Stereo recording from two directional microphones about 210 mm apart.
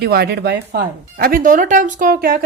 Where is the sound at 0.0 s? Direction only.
50° right (ahead or behind).